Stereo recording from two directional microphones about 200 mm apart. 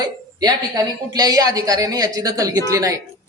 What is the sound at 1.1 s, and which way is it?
A man's voice, 20° right (ahead or behind).